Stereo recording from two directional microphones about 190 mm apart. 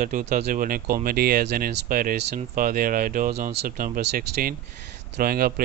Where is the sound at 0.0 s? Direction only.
40° right (ahead or behind).